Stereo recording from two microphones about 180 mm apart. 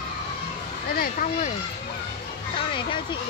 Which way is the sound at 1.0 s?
50° left (ahead or behind).